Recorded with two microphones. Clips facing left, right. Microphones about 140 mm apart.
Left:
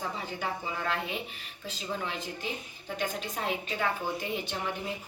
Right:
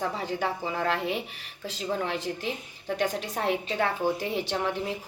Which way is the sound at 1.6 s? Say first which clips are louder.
Right 5 dB; 75° right (ahead or behind).